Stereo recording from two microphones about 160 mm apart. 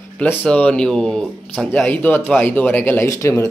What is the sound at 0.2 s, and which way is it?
Speech, 10° left (ahead or behind).